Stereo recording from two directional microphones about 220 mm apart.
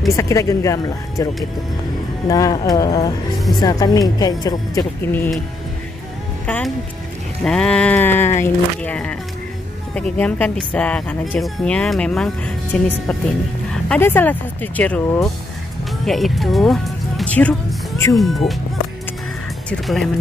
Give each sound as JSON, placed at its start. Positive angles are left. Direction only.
{"t": 0.1, "sound": "speech", "side_deg": 15}
{"t": 6.4, "sound": "speech", "side_deg": 5}
{"t": 13.7, "sound": "speech", "side_deg": 5}
{"t": 19.7, "sound": "speech", "side_deg": 0}